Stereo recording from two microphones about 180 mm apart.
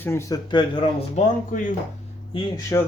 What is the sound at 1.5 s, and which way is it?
Speech, 45° left (ahead or behind).